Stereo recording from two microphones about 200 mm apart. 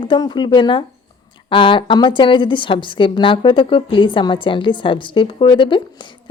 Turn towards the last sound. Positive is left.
turn(degrees=25)  # may be behind; listen again after turning